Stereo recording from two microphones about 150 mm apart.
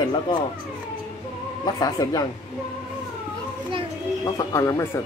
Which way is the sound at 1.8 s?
25° left (ahead or behind).